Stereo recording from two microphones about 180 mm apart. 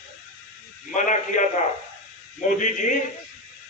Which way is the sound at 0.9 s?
45° left (ahead or behind).